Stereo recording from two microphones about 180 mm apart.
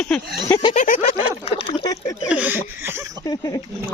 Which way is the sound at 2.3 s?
10° right (ahead or behind).